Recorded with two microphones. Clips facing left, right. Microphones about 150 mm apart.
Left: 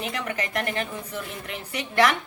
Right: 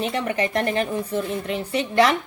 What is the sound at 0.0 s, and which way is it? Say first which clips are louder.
A woman's voice: right 6 dB; 30° right (ahead or behind).